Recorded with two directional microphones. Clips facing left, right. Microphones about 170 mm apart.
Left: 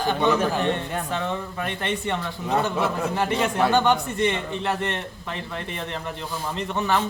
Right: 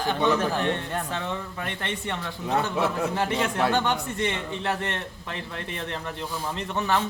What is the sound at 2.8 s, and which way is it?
A man's voice, centre (ahead or behind).